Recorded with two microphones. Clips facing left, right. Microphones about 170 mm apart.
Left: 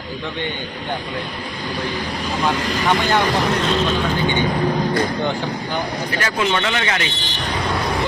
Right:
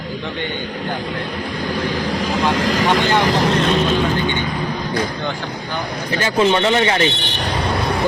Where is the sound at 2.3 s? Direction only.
90° right.